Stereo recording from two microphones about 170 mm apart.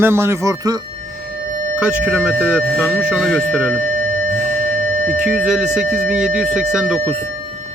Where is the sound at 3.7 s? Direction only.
55° right (ahead or behind).